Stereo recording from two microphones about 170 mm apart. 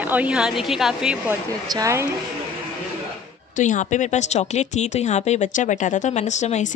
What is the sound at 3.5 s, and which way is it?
A woman's voice, 45° left (ahead or behind).